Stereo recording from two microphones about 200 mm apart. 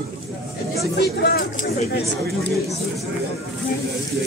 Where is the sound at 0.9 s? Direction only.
50° left (ahead or behind).